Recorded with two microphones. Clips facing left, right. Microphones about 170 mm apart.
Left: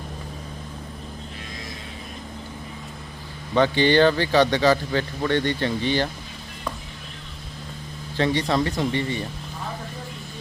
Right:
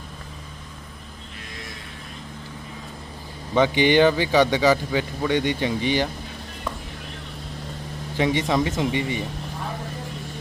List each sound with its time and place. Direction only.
3.5 s speech: 15° right (ahead or behind)
8.1 s speech: 15° right (ahead or behind)